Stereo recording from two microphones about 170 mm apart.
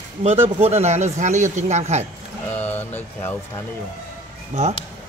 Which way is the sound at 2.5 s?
10° left (ahead or behind).